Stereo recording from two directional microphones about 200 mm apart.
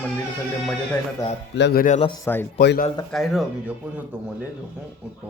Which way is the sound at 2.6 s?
45° left (ahead or behind).